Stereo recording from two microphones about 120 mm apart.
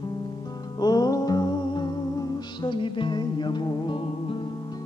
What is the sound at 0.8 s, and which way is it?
Music, 35° left (ahead or behind).